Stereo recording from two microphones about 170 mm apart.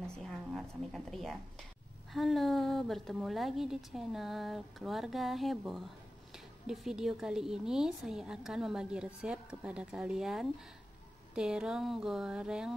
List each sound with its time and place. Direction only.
0.0 s a woman's voice: 5° left (ahead or behind)